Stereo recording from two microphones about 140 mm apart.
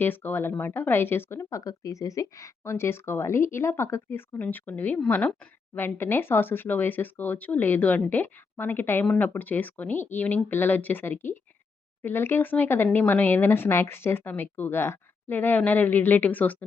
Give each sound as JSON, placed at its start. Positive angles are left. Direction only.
{"t": 0.0, "sound": "speech", "side_deg": 15}